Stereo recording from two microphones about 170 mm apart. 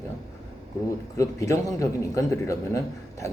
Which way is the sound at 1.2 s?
20° left (ahead or behind).